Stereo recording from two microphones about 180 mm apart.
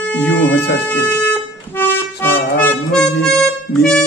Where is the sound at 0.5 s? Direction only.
65° left (ahead or behind).